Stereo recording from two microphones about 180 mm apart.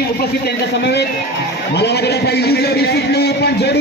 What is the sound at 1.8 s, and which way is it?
A man's voice, 65° left (ahead or behind).